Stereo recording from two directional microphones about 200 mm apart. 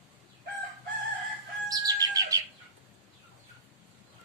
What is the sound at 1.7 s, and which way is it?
Bird, 15° right (ahead or behind).